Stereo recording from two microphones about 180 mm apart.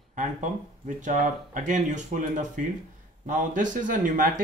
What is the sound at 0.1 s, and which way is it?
Speech, 45° right (ahead or behind).